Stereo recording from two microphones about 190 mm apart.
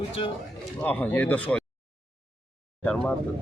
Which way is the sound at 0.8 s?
10° left (ahead or behind).